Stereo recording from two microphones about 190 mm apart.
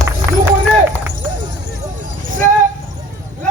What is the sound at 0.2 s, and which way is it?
Run, 10° left (ahead or behind).